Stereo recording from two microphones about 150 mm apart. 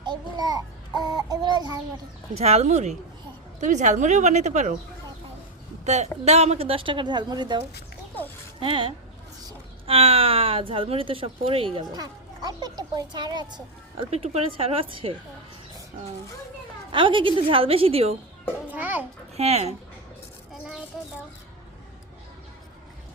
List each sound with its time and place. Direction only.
0.0 s child singing: 30° right (ahead or behind)
2.3 s speech: 45° right (ahead or behind)
5.8 s speech: 50° right (ahead or behind); by 7.6 s 30° right (ahead or behind)
8.6 s speech: 35° right (ahead or behind)
14.1 s speech: 40° right (ahead or behind)
16.9 s speech: 35° right (ahead or behind)
18.7 s a child's voice: 10° right (ahead or behind)
19.4 s speech: 45° right (ahead or behind)